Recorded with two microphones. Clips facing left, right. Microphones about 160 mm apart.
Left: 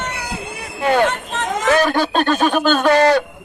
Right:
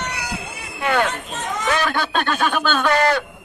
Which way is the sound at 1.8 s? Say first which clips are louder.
Left 5 dB; 40° left (ahead or behind).